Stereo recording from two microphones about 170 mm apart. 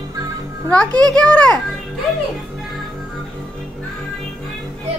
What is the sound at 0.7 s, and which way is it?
Speech, 5° left (ahead or behind).